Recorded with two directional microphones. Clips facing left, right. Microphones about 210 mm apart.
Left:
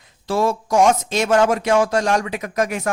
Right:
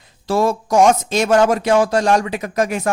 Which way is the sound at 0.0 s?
40° right (ahead or behind).